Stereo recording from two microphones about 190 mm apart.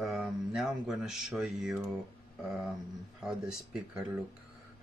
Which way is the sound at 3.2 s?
5° right (ahead or behind).